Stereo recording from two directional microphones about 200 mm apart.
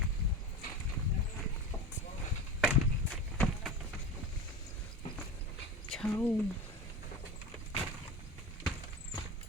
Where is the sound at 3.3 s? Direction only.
Centre (ahead or behind).